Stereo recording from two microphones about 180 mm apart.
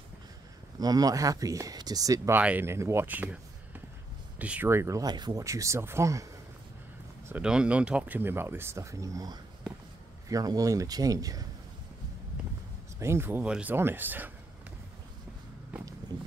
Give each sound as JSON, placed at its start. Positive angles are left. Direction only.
{"t": 0.7, "sound": "speech", "side_deg": -20}
{"t": 4.4, "sound": "speech", "side_deg": -10}
{"t": 7.2, "sound": "speech", "side_deg": -5}
{"t": 13.0, "sound": "speech", "side_deg": -15}